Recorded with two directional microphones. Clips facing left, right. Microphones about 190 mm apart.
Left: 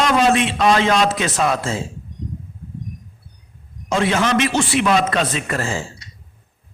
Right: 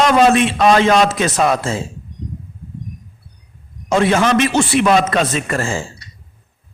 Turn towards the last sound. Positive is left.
turn(degrees=-50)  # may be behind; listen again after turning